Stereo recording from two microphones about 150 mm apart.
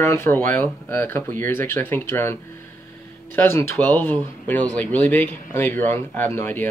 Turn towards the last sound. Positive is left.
turn(degrees=15)  # may be behind; listen again after turning